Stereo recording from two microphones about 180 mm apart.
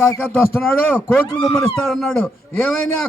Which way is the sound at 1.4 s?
25° left (ahead or behind).